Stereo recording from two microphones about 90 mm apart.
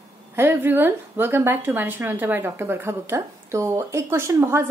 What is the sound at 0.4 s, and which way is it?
A woman's voice, 25° right (ahead or behind).